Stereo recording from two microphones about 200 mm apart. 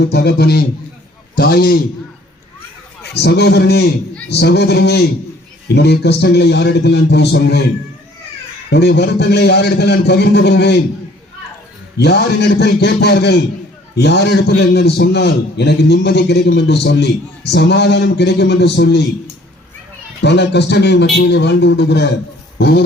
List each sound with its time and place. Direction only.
0.0 s a man's voice: 55° left (ahead or behind)
3.0 s a man's voice: 55° left (ahead or behind)
8.7 s a man's voice: 55° left (ahead or behind)
11.9 s a man's voice: 55° left (ahead or behind)
20.2 s a man's voice: 60° left (ahead or behind)